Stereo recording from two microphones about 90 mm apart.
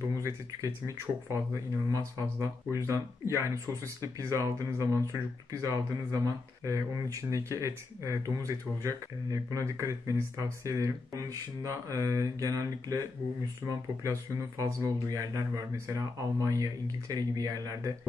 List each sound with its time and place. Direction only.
0.1 s speech: 40° right (ahead or behind)
14.6 s speech: 40° right (ahead or behind)